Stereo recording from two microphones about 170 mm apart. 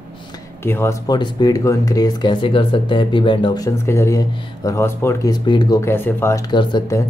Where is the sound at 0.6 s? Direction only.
15° left (ahead or behind).